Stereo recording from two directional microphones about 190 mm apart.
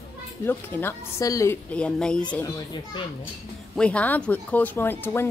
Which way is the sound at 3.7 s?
5° left (ahead or behind).